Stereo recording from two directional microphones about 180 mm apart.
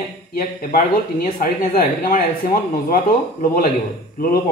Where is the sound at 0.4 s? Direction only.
55° left (ahead or behind).